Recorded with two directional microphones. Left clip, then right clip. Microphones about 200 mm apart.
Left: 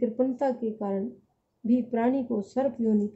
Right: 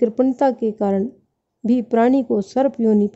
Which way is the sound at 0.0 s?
55° right (ahead or behind).